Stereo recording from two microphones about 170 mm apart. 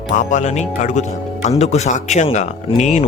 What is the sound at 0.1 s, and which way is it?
Speech, 45° left (ahead or behind).